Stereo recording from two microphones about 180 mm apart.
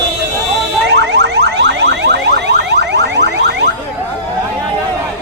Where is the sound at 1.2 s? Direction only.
70° right (ahead or behind).